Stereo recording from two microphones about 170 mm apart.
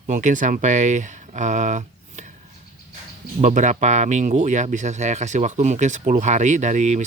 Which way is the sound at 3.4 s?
45° right (ahead or behind).